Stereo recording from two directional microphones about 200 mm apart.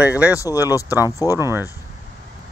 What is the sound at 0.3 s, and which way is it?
Speech, 15° left (ahead or behind).